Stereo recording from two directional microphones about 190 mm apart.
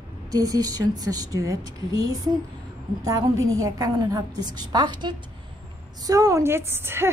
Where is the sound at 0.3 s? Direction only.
20° right (ahead or behind).